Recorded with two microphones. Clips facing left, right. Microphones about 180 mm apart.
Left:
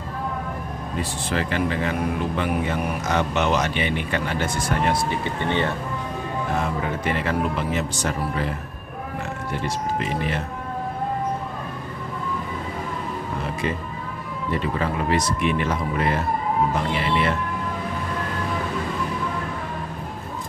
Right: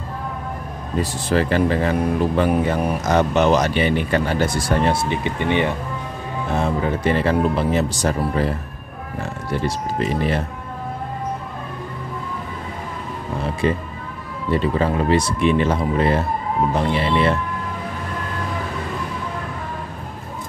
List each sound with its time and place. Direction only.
1.3 s speech: 40° right (ahead or behind)
5.1 s speech: 15° right (ahead or behind)
6.5 s speech: 30° right (ahead or behind)
14.5 s speech: 30° right (ahead or behind)